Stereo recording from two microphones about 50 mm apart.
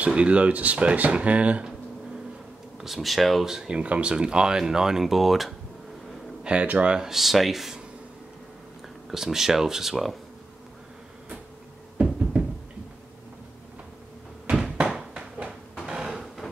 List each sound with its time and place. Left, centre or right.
0.0 s speech: right
2.8 s speech: centre
6.4 s speech: right
7.0 s speech: centre
9.1 s speech: centre
12.0 s knock: right
14.5 s a sound: centre